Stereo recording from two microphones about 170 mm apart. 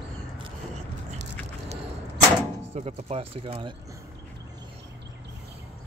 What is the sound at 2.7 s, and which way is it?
Speech, 35° right (ahead or behind).